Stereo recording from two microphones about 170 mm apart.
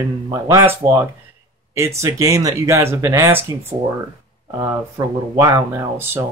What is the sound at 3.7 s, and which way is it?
Speech, 30° right (ahead or behind).